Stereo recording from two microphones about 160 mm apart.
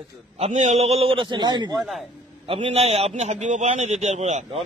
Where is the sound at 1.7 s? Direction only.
Centre (ahead or behind).